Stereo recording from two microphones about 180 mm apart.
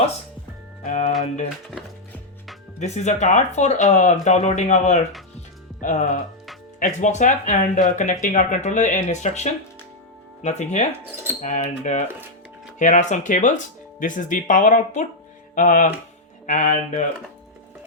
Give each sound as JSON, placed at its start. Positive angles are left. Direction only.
{"t": 0.9, "sound": "speech", "side_deg": 40}
{"t": 2.7, "sound": "speech", "side_deg": 40}